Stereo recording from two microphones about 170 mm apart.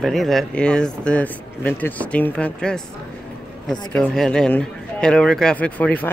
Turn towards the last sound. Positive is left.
turn(degrees=10)  # may be behind; listen again after turning